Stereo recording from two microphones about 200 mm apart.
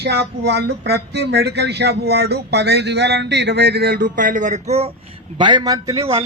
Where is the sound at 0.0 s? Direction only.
55° right (ahead or behind); by 4.9 s 35° right (ahead or behind).